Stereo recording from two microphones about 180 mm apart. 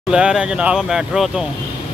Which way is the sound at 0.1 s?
5° right (ahead or behind).